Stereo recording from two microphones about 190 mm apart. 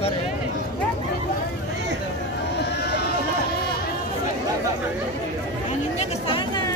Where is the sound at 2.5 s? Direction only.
60° left (ahead or behind).